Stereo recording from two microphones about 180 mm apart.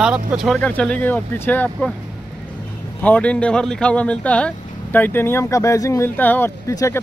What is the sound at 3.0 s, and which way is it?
Speech, 5° left (ahead or behind).